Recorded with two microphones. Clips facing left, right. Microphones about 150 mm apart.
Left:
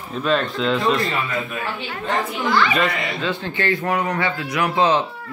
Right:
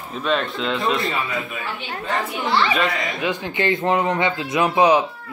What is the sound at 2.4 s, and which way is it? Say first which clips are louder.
Speech: left 1 dB; 30° right (ahead or behind).